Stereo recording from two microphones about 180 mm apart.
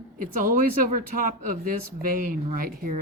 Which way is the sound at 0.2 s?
50° right (ahead or behind).